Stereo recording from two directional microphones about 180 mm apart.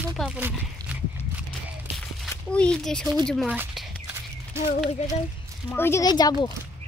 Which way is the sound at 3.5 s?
5° right (ahead or behind).